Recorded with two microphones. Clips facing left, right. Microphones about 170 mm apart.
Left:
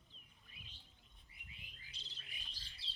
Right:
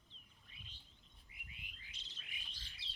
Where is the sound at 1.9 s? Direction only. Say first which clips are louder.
Even; 35° left (ahead or behind).